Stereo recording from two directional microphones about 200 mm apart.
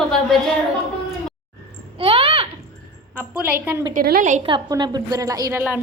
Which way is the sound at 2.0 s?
30° right (ahead or behind).